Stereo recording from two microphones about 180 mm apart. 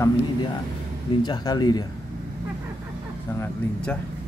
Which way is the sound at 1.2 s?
25° left (ahead or behind).